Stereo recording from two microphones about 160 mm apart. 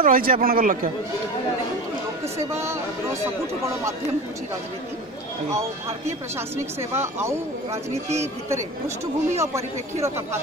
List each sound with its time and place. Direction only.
0.0 s a man's voice: 60° right (ahead or behind)
2.3 s speech: 15° right (ahead or behind)
5.5 s speech: 15° right (ahead or behind)